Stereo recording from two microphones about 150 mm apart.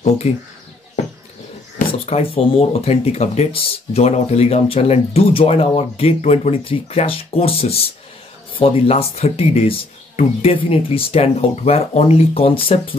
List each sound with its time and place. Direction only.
0.2 s speech: 45° left (ahead or behind)
1.9 s speech: 40° left (ahead or behind)